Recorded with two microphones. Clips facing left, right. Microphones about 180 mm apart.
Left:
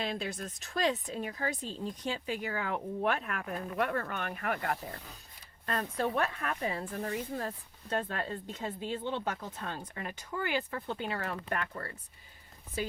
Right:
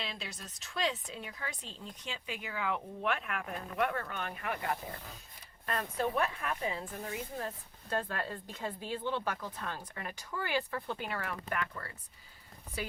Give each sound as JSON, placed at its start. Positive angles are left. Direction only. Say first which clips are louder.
{"t": 0.0, "sound": "a woman's voice", "louder": "left 8 dB", "side_deg": 50}
{"t": 5.6, "sound": "a woman's voice", "louder": "left 1 dB", "side_deg": 35}
{"t": 7.9, "sound": "speech", "louder": "left 2 dB", "side_deg": 25}
{"t": 10.8, "sound": "a woman's voice", "louder": "left 2 dB", "side_deg": 25}